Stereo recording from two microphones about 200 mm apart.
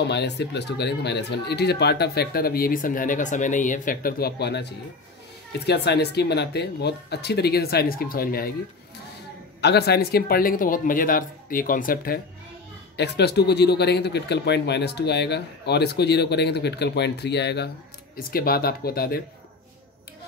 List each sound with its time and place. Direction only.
0.0 s speech: 55° left (ahead or behind)
9.6 s speech: 55° left (ahead or behind)
12.9 s speech: 55° left (ahead or behind)